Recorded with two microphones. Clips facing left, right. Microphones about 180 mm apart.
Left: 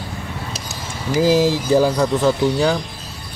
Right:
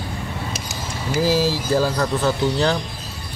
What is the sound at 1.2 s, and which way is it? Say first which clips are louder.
Speech: left 4 dB; 20° left (ahead or behind).